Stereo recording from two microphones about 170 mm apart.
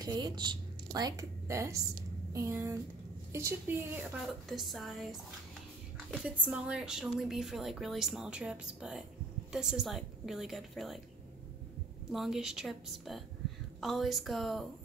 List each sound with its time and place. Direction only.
0.0 s a woman's voice: 25° right (ahead or behind); by 11.0 s centre (ahead or behind)
12.1 s speech: centre (ahead or behind)